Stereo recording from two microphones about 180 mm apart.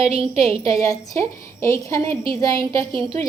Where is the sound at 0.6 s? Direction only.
20° left (ahead or behind).